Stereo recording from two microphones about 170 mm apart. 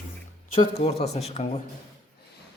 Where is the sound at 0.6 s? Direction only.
40° left (ahead or behind).